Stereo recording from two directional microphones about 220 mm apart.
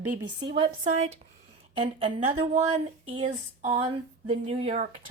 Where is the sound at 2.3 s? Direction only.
30° right (ahead or behind).